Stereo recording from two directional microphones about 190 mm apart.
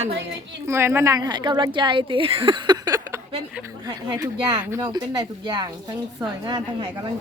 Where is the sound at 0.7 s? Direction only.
15° right (ahead or behind).